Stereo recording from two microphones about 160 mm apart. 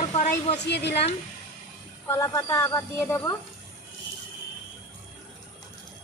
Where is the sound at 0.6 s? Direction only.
90° left.